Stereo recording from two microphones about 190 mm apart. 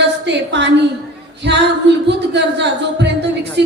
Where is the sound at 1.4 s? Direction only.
65° right (ahead or behind).